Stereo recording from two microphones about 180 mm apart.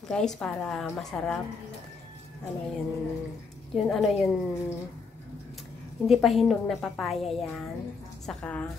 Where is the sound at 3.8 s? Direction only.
Centre (ahead or behind).